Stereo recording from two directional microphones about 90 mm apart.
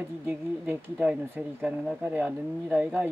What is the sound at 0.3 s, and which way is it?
Speech, 20° right (ahead or behind).